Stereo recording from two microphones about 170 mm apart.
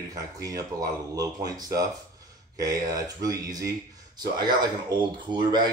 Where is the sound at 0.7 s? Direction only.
25° right (ahead or behind).